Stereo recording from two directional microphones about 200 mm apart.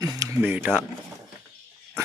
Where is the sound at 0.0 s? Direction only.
15° right (ahead or behind).